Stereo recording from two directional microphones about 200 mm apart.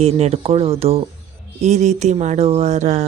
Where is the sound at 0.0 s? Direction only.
30° right (ahead or behind).